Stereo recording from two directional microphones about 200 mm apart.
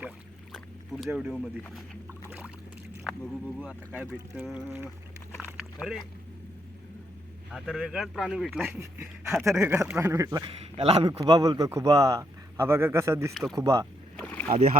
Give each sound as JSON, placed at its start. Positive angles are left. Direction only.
{"t": 0.5, "sound": "boat", "side_deg": 0}
{"t": 3.0, "sound": "speech", "side_deg": 0}
{"t": 7.5, "sound": "a man's voice", "side_deg": 0}
{"t": 10.6, "sound": "a man's voice", "side_deg": -30}
{"t": 11.2, "sound": "a man's voice", "side_deg": -20}
{"t": 14.2, "sound": "rowboat", "side_deg": 5}